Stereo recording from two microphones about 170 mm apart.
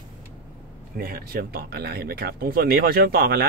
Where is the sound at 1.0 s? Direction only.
60° right (ahead or behind).